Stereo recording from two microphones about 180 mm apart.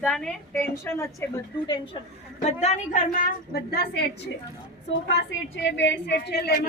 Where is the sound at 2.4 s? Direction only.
40° left (ahead or behind); by 3.8 s 55° left (ahead or behind).